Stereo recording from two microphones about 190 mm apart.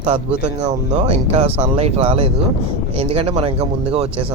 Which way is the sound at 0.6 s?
35° right (ahead or behind).